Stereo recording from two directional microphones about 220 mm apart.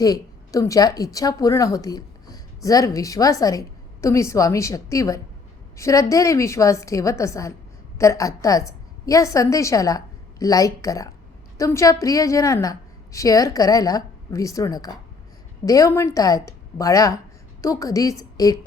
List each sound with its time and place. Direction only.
0.0 s a woman's voice: 15° left (ahead or behind)